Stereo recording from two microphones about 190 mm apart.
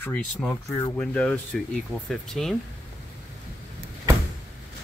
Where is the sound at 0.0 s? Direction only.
10° left (ahead or behind).